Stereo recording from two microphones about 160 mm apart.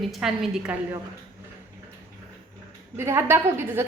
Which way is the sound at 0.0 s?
Centre (ahead or behind).